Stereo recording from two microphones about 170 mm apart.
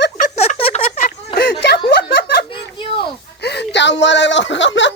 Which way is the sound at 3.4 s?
80° left.